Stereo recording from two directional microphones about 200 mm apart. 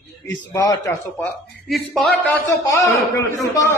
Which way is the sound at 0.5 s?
15° left (ahead or behind).